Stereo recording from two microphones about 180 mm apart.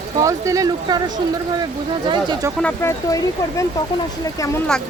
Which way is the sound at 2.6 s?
15° left (ahead or behind).